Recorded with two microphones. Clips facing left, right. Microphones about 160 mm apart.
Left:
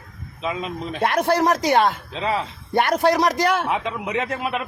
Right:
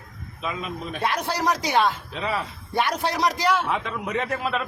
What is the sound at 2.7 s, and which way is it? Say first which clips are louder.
Speech: left 6 dB; 55° left (ahead or behind).